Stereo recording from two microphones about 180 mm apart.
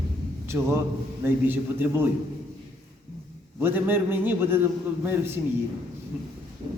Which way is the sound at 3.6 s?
10° right (ahead or behind).